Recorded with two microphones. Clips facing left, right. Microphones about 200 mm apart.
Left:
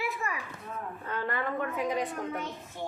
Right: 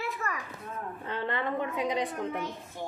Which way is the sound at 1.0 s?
25° right (ahead or behind).